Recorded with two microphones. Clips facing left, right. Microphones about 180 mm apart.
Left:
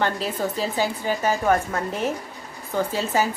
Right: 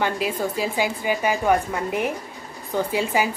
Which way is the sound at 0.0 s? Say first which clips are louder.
Right 1 dB; 10° right (ahead or behind).